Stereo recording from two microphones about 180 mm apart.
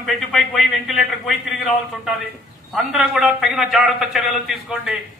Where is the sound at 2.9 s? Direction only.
5° right (ahead or behind).